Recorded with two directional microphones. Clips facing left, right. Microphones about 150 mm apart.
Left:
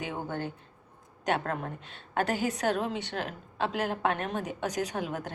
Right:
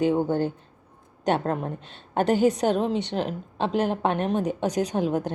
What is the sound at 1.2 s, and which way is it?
A woman's voice, 25° right (ahead or behind).